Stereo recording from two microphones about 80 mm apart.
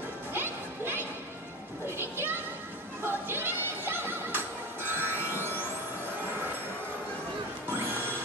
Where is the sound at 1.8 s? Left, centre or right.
Right.